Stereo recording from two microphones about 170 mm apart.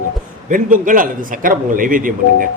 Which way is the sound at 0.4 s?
50° right (ahead or behind).